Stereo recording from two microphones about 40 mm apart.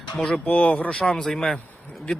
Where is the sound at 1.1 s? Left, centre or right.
Centre.